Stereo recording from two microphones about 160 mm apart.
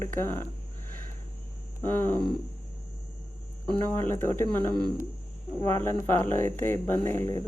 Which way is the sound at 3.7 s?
15° left (ahead or behind).